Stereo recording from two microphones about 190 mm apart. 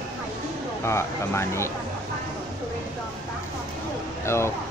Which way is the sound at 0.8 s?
15° left (ahead or behind).